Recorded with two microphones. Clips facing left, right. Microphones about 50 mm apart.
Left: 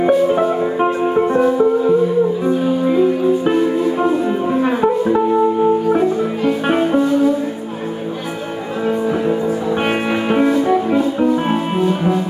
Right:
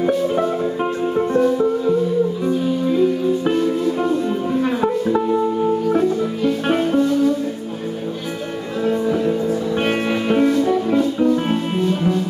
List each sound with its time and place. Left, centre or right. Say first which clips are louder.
0.0 s music: left 4 dB; centre
8.8 s music: left 1 dB; left